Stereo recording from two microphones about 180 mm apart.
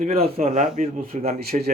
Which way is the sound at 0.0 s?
35° right (ahead or behind).